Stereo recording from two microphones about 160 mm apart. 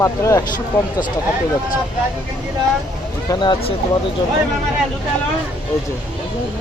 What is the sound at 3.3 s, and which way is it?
Speech, 25° left (ahead or behind).